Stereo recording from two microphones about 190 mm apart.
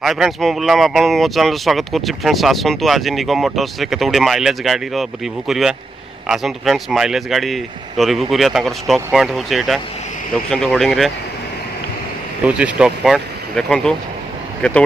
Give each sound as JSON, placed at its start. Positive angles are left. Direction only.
{"t": 0.0, "sound": "speech", "side_deg": 0}
{"t": 12.4, "sound": "speech", "side_deg": -5}